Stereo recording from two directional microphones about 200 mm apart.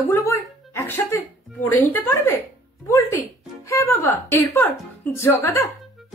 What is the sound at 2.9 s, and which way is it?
Music, 15° left (ahead or behind).